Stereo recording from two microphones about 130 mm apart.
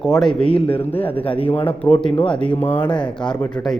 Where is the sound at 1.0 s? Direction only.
45° left (ahead or behind).